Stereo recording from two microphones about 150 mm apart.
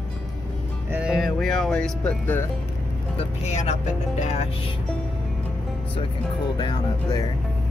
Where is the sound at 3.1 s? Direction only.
45° left (ahead or behind).